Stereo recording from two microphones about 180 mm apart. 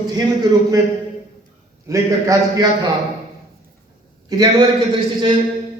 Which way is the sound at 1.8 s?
20° right (ahead or behind).